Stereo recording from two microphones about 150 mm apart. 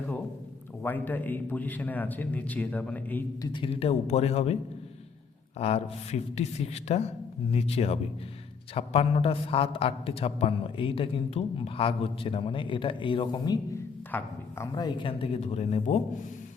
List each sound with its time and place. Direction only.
0.8 s a man's voice: 15° left (ahead or behind)
3.4 s speech: 35° left (ahead or behind)
5.5 s a man's voice: 45° left (ahead or behind); by 13.6 s 30° left (ahead or behind)
14.1 s speech: 10° left (ahead or behind)
14.8 s a man's voice: 30° left (ahead or behind); by 16.0 s 45° left (ahead or behind)